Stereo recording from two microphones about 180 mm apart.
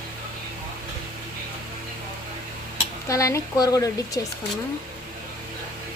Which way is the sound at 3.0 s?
15° left (ahead or behind).